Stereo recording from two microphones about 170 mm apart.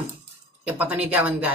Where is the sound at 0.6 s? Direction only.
10° right (ahead or behind).